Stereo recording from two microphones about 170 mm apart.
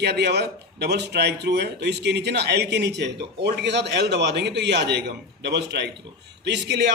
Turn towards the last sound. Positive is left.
turn(degrees=-85)